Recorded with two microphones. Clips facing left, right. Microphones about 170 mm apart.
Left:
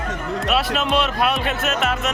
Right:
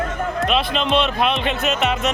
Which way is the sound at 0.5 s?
5° left (ahead or behind).